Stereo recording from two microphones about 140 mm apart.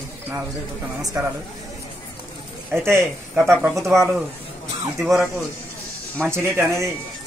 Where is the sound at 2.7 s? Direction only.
15° right (ahead or behind).